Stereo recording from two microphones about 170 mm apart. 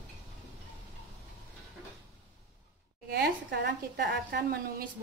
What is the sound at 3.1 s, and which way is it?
A woman's voice, 70° right (ahead or behind).